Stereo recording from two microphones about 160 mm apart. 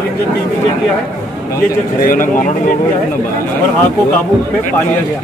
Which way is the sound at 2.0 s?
65° left (ahead or behind).